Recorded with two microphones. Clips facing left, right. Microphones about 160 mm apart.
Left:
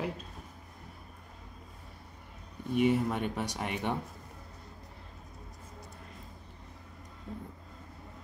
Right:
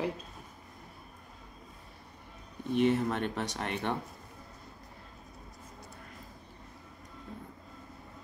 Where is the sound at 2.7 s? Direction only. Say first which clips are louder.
Even; 10° left (ahead or behind).